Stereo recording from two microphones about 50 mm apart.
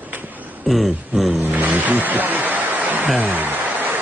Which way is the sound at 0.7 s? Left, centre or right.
Centre.